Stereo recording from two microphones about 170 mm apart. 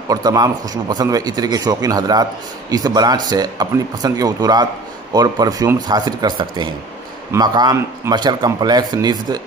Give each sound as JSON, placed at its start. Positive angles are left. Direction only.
{"t": 0.1, "sound": "a man's voice", "side_deg": -20}